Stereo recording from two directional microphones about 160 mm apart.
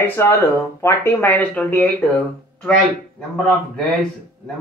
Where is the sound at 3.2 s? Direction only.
5° left (ahead or behind).